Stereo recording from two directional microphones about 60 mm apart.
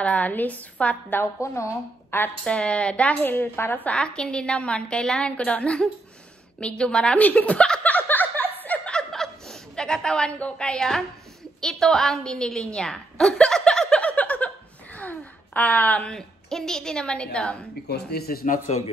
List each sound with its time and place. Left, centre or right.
0.0 s a woman's voice: left
1.2 s a woman's voice: left
2.4 s a woman's voice: centre
3.3 s a woman's voice: left
4.0 s a woman's voice: centre
7.8 s chuckle: left
8.6 s snicker: left
8.9 s snicker: centre
10.4 s a woman's voice: centre
14.0 s a sound: left
16.0 s a woman's voice: centre